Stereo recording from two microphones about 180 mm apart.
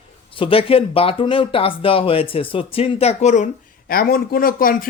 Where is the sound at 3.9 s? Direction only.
55° left (ahead or behind).